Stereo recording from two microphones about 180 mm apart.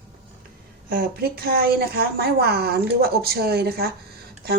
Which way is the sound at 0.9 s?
60° right (ahead or behind).